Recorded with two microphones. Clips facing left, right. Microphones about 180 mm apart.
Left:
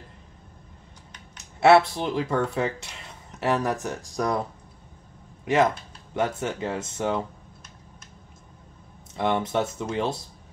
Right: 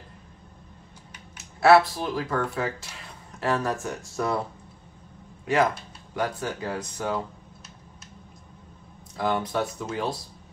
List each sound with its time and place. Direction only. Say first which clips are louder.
1.6 s speech: left 1 dB; 25° left (ahead or behind)
5.4 s speech: left 2 dB; 20° left (ahead or behind)
9.1 s speech: left 2 dB; 25° left (ahead or behind)